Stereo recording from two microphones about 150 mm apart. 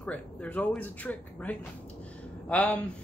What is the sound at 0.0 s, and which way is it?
A man's voice, 10° left (ahead or behind).